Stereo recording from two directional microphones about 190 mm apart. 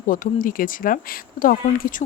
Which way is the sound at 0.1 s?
45° left (ahead or behind).